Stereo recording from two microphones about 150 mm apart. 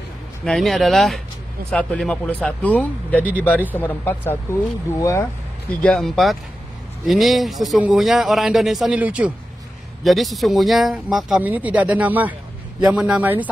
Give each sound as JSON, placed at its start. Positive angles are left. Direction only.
{"t": 0.5, "sound": "speech", "side_deg": 0}
{"t": 5.8, "sound": "a man's voice", "side_deg": 5}